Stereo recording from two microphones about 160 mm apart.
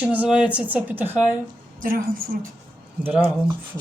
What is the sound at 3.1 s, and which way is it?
Speech, 10° right (ahead or behind).